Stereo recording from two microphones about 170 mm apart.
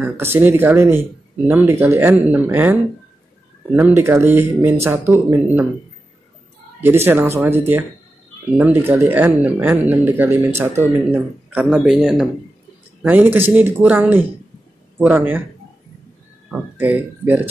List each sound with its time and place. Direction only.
0.0 s speech: 15° right (ahead or behind)
6.8 s speech: 15° right (ahead or behind)
11.7 s speech: 5° right (ahead or behind)
16.4 s speech: 10° right (ahead or behind)